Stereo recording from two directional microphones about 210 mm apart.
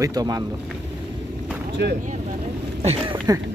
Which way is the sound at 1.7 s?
55° right (ahead or behind).